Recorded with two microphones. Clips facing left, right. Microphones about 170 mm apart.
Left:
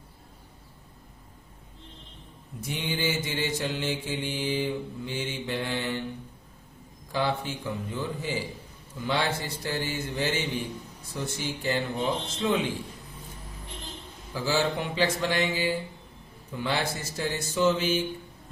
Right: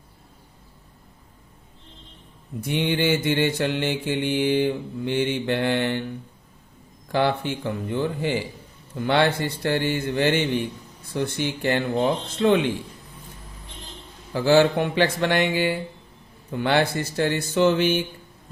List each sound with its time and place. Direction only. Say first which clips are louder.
2.6 s mantra: right 8 dB; 60° right (ahead or behind)
7.1 s mantra: right 6 dB; 65° right (ahead or behind)
14.3 s mantra: right 9 dB; 65° right (ahead or behind)